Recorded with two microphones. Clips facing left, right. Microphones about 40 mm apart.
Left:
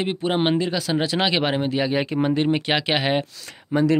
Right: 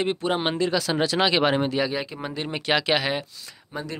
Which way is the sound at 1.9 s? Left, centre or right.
Left.